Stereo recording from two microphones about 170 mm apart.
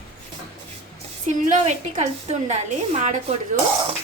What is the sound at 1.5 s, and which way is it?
A woman's voice, 40° right (ahead or behind).